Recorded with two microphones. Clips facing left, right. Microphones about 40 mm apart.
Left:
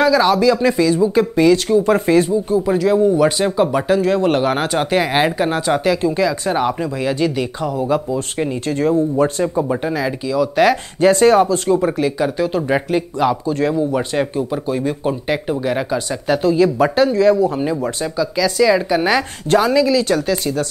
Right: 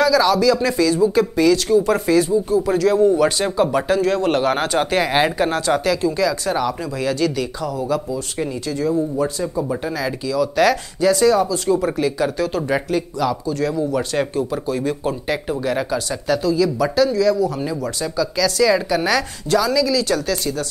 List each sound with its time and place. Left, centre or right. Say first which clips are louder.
0.0 s speech: left 2 dB; left
2.6 s speech: left 2 dB; centre
8.7 s speech: left 4 dB; left
9.7 s speech: left 3 dB; centre
11.0 s speech: left 4 dB; left
11.8 s speech: left 2 dB; centre
13.7 s speech: left 2 dB; centre
16.4 s speech: left 5 dB; left
19.5 s speech: left 4 dB; left